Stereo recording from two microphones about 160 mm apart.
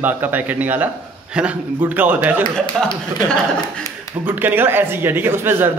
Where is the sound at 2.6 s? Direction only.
30° left (ahead or behind).